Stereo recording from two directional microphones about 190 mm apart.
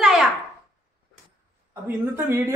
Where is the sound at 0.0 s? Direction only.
Centre (ahead or behind).